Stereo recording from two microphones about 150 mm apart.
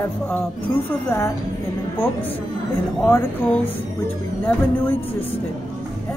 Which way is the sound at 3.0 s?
15° left (ahead or behind).